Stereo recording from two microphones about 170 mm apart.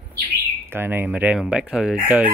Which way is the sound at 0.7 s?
15° right (ahead or behind).